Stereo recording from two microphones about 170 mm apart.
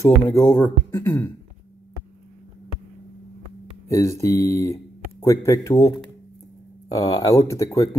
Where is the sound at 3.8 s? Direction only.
15° left (ahead or behind).